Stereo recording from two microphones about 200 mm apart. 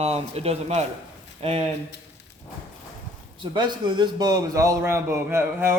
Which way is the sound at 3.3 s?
25° right (ahead or behind).